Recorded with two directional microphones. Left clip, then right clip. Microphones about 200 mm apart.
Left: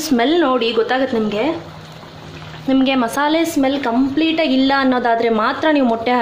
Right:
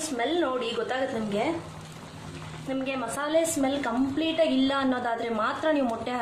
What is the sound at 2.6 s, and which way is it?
Speech, 45° left (ahead or behind).